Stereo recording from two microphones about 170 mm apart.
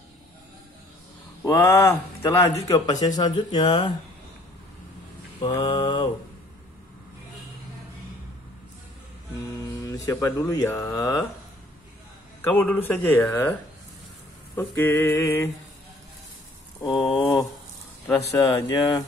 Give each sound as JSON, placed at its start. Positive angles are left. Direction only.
{"t": 1.4, "sound": "speech", "side_deg": 15}
{"t": 5.4, "sound": "mantra", "side_deg": 30}
{"t": 9.8, "sound": "speech", "side_deg": 20}
{"t": 12.4, "sound": "speech", "side_deg": 10}
{"t": 16.9, "sound": "a sound", "side_deg": 0}
{"t": 18.3, "sound": "speech", "side_deg": 25}